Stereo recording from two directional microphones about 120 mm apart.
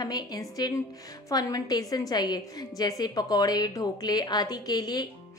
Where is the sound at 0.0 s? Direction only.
35° left (ahead or behind).